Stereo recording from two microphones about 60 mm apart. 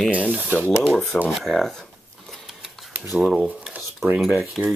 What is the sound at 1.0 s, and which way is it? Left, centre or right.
Speech, left.